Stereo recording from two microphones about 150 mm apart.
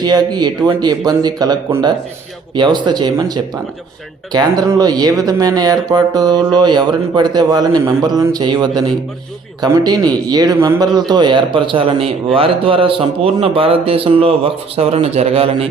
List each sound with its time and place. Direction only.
0.0 s speech: 25° right (ahead or behind)
2.6 s speech: 30° right (ahead or behind)